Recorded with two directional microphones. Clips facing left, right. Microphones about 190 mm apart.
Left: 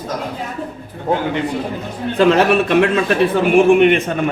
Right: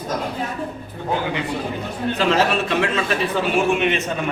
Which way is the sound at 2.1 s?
60° left (ahead or behind).